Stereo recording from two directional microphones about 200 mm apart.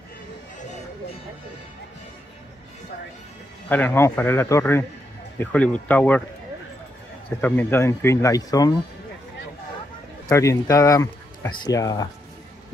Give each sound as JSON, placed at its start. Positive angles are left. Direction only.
{"t": 3.6, "sound": "speech", "side_deg": 10}
{"t": 7.4, "sound": "speech", "side_deg": 10}
{"t": 10.2, "sound": "speech", "side_deg": 15}